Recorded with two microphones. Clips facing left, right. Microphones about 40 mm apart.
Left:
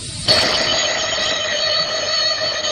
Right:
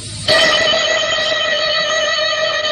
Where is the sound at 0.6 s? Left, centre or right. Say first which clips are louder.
Right 5 dB; right.